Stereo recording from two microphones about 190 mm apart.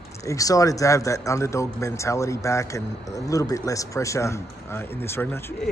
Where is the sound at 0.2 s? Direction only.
15° left (ahead or behind).